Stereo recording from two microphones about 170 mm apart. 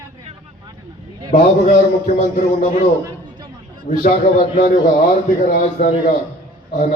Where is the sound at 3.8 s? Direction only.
50° left (ahead or behind).